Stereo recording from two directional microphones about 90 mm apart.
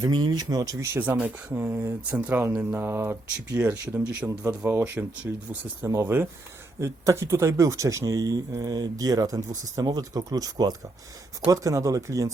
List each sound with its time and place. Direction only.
0.0 s speech: 55° right (ahead or behind)
0.9 s speech: 20° right (ahead or behind)
3.9 s speech: 15° right (ahead or behind)
4.3 s speech: 30° right (ahead or behind)
5.2 s speech: 10° right (ahead or behind)
5.8 s speech: 30° right (ahead or behind)